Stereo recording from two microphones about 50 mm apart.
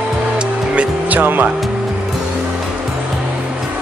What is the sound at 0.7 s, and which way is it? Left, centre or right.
Music, right.